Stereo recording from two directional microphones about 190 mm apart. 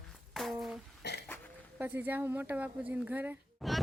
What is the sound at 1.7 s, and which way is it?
Speech, 10° right (ahead or behind).